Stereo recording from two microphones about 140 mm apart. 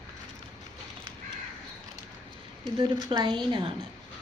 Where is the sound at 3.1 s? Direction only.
30° right (ahead or behind).